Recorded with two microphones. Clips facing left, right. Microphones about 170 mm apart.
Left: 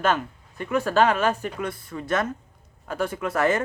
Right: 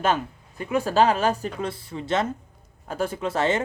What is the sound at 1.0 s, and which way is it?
Speech, 35° right (ahead or behind).